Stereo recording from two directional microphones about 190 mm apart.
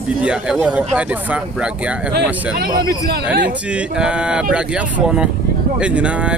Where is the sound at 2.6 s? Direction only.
55° right (ahead or behind).